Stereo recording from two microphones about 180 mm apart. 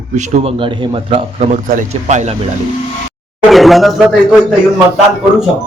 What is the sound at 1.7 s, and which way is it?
Speech, 45° right (ahead or behind).